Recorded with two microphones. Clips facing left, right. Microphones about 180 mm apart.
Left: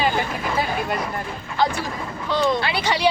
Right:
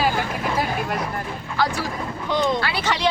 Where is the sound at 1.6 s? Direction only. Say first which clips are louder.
Left 1 dB; 20° left (ahead or behind).